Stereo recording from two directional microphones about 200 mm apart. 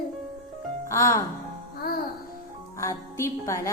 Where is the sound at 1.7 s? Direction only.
50° left (ahead or behind).